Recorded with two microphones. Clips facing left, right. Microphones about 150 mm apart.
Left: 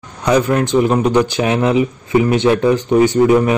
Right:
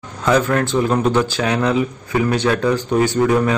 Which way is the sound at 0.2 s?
15° left (ahead or behind).